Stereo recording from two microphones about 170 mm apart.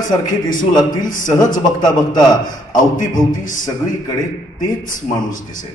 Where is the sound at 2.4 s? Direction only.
50° left (ahead or behind).